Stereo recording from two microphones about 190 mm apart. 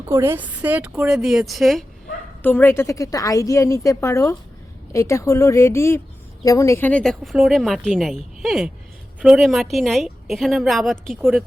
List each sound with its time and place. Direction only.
0.1 s a woman's voice: 10° right (ahead or behind)